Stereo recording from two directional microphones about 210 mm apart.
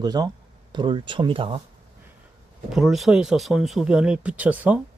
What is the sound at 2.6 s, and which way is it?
Speech, centre (ahead or behind).